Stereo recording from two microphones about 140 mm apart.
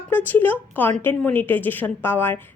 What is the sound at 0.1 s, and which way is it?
A woman's voice, 15° left (ahead or behind).